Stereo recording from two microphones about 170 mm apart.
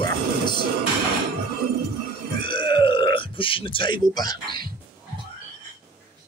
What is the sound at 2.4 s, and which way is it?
Speech, 30° left (ahead or behind).